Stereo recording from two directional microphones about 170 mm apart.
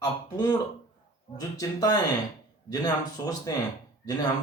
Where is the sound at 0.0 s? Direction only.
20° left (ahead or behind).